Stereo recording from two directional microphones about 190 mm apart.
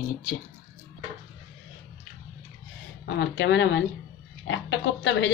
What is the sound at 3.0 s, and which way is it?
Speech, 70° left (ahead or behind).